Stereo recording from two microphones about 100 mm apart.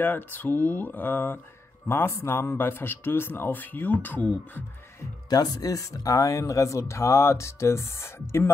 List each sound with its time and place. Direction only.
0.0 s speech: 20° left (ahead or behind)
5.3 s speech: 40° left (ahead or behind)